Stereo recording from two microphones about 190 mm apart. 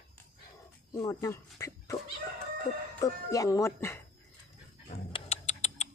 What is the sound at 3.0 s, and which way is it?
Speech, 15° left (ahead or behind).